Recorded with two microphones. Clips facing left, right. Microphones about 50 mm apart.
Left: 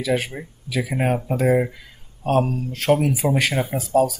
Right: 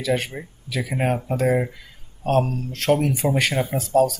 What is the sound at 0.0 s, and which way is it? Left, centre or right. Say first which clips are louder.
Speech: left 1 dB; centre.